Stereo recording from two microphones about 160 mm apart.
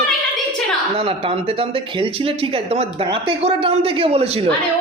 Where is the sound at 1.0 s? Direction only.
35° right (ahead or behind).